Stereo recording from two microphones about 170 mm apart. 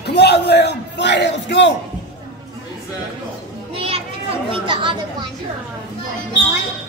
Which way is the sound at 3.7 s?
35° right (ahead or behind).